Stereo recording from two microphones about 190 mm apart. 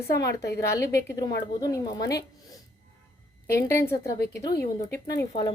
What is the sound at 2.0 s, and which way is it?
Speech, 60° left (ahead or behind).